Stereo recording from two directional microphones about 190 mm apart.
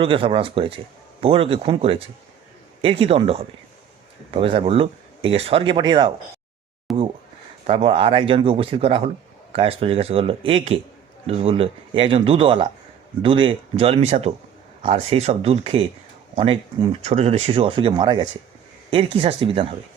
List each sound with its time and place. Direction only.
0.0 s speech: 30° right (ahead or behind)
6.9 s a sound: centre (ahead or behind)
7.7 s speech: 30° right (ahead or behind)